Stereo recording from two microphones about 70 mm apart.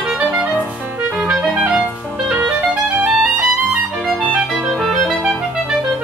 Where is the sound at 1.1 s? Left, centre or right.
Centre.